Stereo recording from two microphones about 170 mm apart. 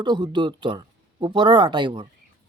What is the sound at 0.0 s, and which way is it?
Speech, 25° right (ahead or behind).